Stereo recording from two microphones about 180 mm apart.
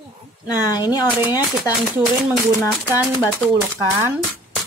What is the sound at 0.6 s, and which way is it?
Speech, 20° left (ahead or behind).